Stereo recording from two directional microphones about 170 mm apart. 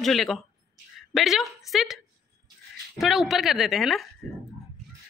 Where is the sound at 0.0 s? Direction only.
Centre (ahead or behind).